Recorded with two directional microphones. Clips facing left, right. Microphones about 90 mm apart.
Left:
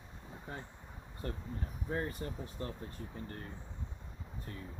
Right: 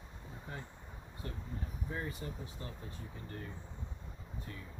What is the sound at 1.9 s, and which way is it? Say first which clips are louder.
Speech: left 5 dB; 45° left (ahead or behind).